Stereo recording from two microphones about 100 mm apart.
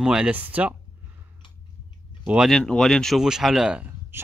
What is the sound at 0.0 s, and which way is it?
Speech, 10° right (ahead or behind).